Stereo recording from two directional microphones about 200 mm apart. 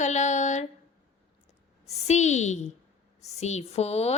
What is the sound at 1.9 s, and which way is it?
A woman's voice, 35° left (ahead or behind).